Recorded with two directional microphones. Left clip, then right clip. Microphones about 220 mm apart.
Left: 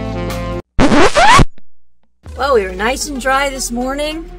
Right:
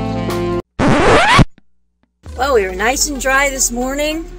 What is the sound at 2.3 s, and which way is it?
Speech, 5° left (ahead or behind).